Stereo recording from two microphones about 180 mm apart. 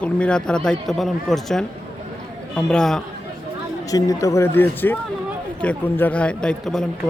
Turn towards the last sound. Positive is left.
turn(degrees=0)  # may be behind; listen again after turning